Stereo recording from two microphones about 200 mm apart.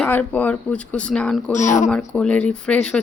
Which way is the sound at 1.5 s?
40° left (ahead or behind).